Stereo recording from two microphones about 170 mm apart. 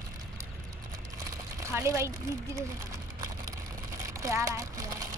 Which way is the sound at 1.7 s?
15° right (ahead or behind).